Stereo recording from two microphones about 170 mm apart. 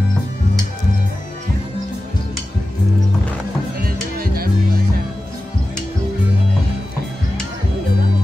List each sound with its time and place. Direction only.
3.8 s music: 60° right (ahead or behind)